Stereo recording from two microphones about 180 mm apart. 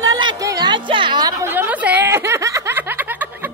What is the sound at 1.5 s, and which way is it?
Snicker, 10° right (ahead or behind).